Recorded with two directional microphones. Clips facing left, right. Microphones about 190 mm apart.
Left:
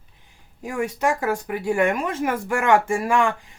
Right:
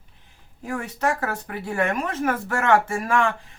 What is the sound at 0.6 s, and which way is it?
Speech, 10° left (ahead or behind).